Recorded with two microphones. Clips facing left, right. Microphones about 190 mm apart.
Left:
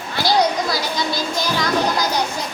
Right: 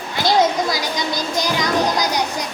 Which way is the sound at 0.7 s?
20° right (ahead or behind).